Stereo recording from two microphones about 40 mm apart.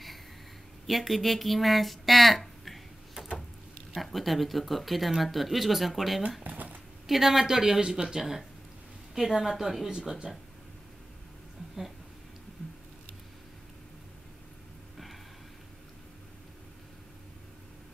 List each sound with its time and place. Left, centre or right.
0.8 s speech: centre
3.2 s a sound: right
3.9 s speech: centre
6.4 s a sound: right
7.1 s speech: centre
9.8 s speech: centre